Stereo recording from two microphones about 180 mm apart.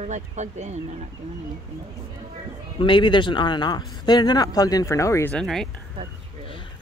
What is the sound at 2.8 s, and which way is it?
Speech, 25° left (ahead or behind).